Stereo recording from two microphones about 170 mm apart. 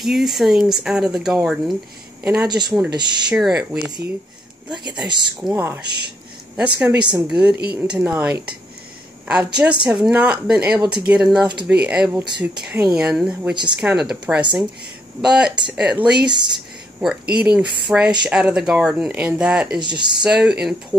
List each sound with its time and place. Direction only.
0.0 s speech: centre (ahead or behind)
2.5 s speech: 25° right (ahead or behind)
3.3 s speech: 5° right (ahead or behind)
5.4 s speech: 10° right (ahead or behind)
5.9 s speech: 80° right
6.5 s speech: 5° right (ahead or behind)
19.8 s speech: 25° right (ahead or behind)
20.2 s speech: 5° right (ahead or behind)